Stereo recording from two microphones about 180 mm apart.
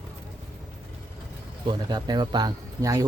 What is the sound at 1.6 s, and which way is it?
Speech, 25° right (ahead or behind).